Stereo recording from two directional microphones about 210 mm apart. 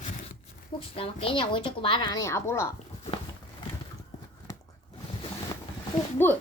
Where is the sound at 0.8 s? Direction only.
25° left (ahead or behind).